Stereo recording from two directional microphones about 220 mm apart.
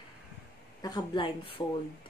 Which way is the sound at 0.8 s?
20° left (ahead or behind).